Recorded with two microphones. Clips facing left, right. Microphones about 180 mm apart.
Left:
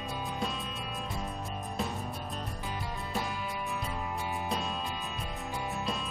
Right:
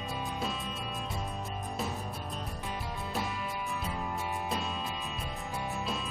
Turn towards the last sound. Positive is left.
turn(degrees=0)  # may be behind; listen again after turning